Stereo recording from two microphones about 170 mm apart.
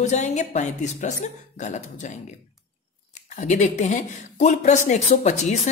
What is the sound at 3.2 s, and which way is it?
Speech, 45° left (ahead or behind).